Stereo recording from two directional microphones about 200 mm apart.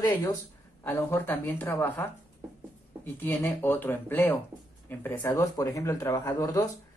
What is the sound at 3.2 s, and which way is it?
Speech, 10° left (ahead or behind).